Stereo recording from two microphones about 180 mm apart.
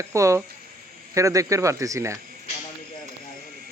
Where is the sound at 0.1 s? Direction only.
15° right (ahead or behind).